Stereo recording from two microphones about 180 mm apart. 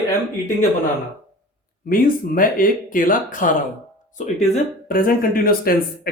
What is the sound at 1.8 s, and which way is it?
Speech, 50° left (ahead or behind).